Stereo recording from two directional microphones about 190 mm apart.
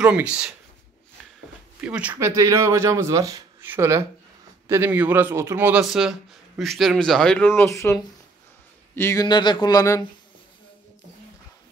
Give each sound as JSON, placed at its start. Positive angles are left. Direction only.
{"t": 0.0, "sound": "speech", "side_deg": -5}
{"t": 1.8, "sound": "a man's voice", "side_deg": -5}